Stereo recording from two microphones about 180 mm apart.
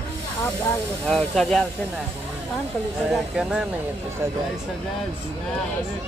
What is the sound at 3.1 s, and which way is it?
Speech, 5° right (ahead or behind).